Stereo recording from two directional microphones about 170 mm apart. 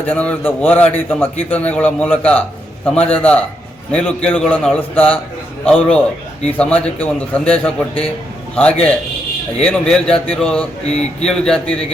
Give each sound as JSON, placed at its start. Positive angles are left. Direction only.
{"t": 0.0, "sound": "a man's voice", "side_deg": 10}